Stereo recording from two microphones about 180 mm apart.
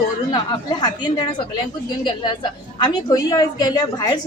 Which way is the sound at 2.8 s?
25° left (ahead or behind).